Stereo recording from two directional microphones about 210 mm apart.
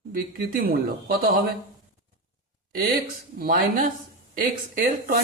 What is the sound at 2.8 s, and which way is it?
Speech, 45° right (ahead or behind).